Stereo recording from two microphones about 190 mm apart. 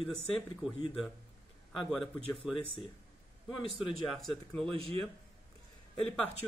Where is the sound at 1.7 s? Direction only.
Centre (ahead or behind).